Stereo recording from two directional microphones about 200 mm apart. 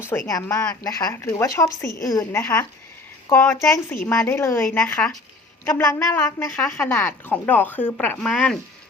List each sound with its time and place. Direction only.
0.1 s a woman's voice: 15° left (ahead or behind)